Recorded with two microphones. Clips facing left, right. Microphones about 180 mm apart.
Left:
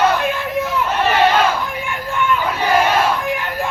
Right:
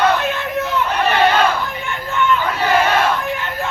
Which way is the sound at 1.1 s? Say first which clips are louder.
Even; 5° left (ahead or behind).